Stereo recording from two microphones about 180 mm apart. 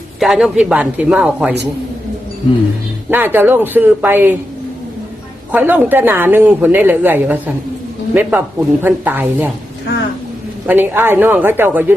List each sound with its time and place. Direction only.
0.2 s speech: 5° right (ahead or behind)
3.1 s speech: 10° right (ahead or behind)
5.5 s speech: 10° right (ahead or behind)
10.7 s speech: 10° right (ahead or behind)